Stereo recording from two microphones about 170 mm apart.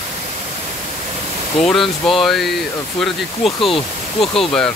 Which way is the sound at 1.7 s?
Centre (ahead or behind).